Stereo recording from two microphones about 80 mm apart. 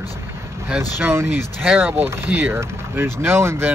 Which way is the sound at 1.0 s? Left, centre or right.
Right.